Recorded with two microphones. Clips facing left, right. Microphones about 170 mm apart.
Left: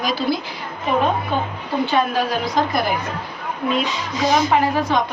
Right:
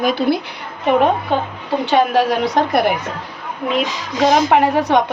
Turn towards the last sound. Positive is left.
turn(degrees=-70)  # may be behind; listen again after turning